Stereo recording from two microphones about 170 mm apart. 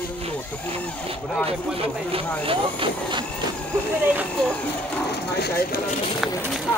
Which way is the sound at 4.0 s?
10° right (ahead or behind).